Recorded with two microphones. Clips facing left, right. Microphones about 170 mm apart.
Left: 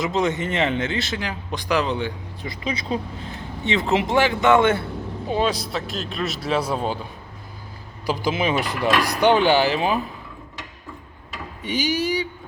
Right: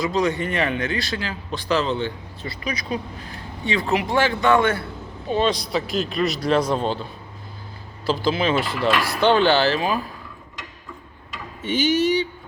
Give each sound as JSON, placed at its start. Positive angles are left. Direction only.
{"t": 0.0, "sound": "speech", "side_deg": 20}
{"t": 2.6, "sound": "speech", "side_deg": 25}
{"t": 5.3, "sound": "a man's voice", "side_deg": 10}
{"t": 8.0, "sound": "speech", "side_deg": 15}
{"t": 11.6, "sound": "speech", "side_deg": 10}